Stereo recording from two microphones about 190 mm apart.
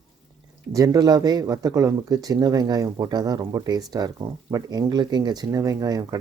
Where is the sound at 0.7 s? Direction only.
20° right (ahead or behind).